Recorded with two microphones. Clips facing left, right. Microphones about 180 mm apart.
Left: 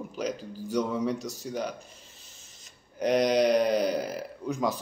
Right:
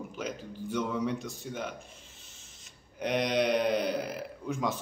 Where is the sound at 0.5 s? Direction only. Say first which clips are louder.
Left 2 dB; 40° left (ahead or behind).